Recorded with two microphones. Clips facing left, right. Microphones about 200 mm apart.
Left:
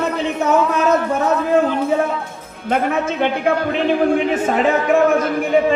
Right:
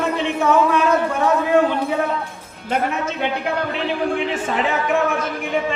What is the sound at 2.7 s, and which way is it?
A woman's voice, 50° left (ahead or behind).